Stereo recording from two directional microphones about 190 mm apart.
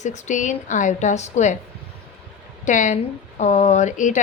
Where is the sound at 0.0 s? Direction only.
40° left (ahead or behind).